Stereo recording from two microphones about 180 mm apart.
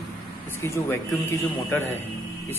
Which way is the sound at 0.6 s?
15° left (ahead or behind).